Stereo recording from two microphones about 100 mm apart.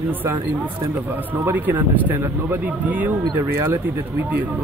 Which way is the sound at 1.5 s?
20° right (ahead or behind).